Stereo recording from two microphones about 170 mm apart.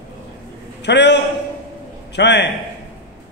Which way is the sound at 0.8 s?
90° left.